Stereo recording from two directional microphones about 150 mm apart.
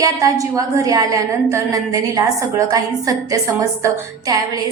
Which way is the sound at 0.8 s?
25° right (ahead or behind).